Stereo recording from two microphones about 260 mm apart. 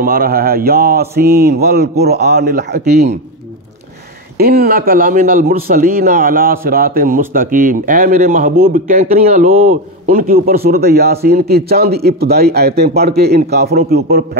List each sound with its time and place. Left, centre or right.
0.0 s a man's voice: right
4.4 s a man's voice: right